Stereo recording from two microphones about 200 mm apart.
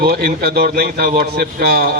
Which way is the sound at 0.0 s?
50° right (ahead or behind).